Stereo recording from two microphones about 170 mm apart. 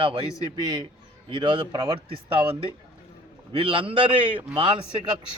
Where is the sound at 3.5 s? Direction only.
30° right (ahead or behind).